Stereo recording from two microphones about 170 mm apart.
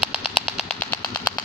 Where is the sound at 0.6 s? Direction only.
5° left (ahead or behind).